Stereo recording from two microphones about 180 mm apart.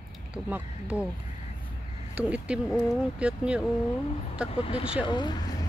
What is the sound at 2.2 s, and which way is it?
Speech, 5° right (ahead or behind).